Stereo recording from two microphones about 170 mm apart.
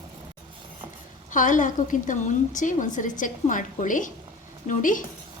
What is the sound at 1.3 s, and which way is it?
A woman's voice, 50° left (ahead or behind).